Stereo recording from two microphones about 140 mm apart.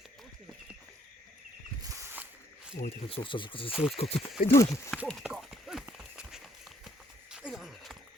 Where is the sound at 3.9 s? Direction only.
45° left (ahead or behind).